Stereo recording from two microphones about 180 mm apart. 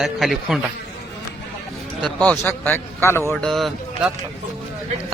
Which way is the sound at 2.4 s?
10° left (ahead or behind).